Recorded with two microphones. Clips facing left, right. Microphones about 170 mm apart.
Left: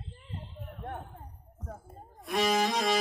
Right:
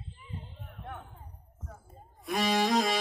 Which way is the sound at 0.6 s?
40° left (ahead or behind).